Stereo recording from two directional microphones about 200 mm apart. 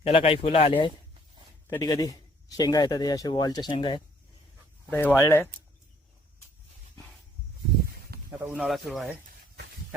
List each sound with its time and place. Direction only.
0.1 s speech: 25° left (ahead or behind)
4.9 s speech: 10° left (ahead or behind)
8.3 s speech: 5° right (ahead or behind)